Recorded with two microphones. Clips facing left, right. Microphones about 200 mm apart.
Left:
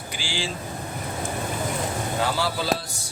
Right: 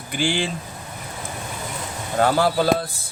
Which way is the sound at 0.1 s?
55° right (ahead or behind).